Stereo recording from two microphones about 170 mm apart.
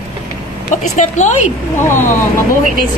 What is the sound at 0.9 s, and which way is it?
Speech, 45° left (ahead or behind).